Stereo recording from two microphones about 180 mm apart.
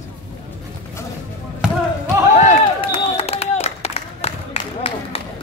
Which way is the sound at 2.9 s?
30° left (ahead or behind).